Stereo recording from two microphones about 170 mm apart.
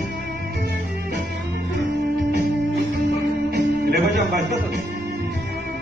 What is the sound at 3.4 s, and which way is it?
Music, 75° right (ahead or behind).